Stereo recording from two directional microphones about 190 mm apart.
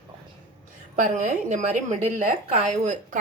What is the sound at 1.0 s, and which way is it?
Speech, 40° right (ahead or behind).